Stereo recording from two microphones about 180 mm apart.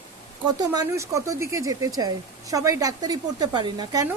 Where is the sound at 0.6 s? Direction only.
20° right (ahead or behind).